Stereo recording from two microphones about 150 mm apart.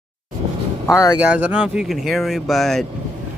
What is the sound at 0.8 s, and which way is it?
Speech, 25° left (ahead or behind).